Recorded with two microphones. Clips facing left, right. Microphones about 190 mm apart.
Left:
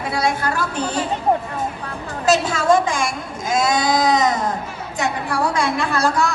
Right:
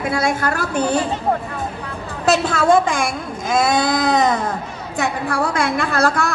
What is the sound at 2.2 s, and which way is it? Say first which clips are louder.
A woman's voice: right 1 dB; 60° right (ahead or behind).